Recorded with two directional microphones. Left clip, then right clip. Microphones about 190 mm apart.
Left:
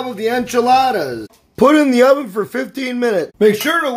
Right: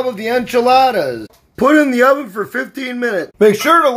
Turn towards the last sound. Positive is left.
turn(degrees=-5)  # may be behind; listen again after turning